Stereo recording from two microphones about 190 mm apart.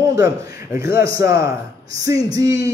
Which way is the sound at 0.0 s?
15° right (ahead or behind).